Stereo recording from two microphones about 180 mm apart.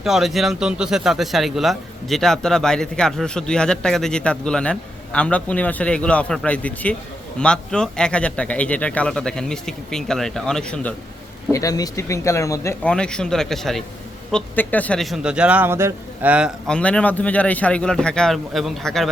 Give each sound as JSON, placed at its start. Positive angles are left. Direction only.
{"t": 0.0, "sound": "speech", "side_deg": 0}
{"t": 11.5, "sound": "speech", "side_deg": 20}
{"t": 12.9, "sound": "speech", "side_deg": 5}
{"t": 16.6, "sound": "speech", "side_deg": 5}